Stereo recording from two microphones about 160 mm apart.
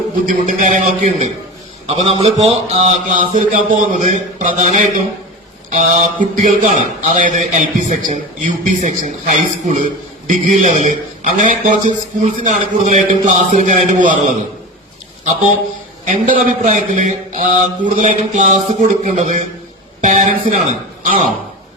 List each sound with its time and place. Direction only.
0.3 s mantra: 55° right (ahead or behind)
10.2 s a man's voice: 55° right (ahead or behind)
10.6 s mantra: 50° right (ahead or behind)
16.0 s mantra: 55° right (ahead or behind)
20.0 s a man's voice: 50° right (ahead or behind)